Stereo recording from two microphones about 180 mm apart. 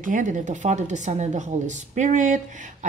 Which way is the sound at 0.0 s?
45° right (ahead or behind).